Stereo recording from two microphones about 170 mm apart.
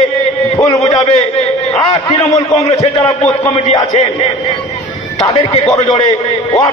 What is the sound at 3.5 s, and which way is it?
Speech, 35° left (ahead or behind).